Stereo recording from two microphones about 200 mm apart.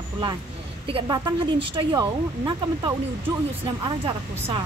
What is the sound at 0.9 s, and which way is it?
Speech, 25° right (ahead or behind).